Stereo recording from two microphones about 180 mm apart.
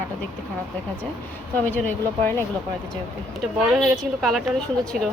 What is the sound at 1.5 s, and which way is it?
Speech, 10° left (ahead or behind).